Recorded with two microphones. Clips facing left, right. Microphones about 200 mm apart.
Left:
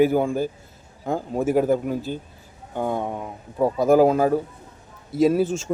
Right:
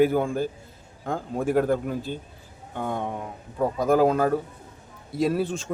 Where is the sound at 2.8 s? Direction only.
45° left (ahead or behind).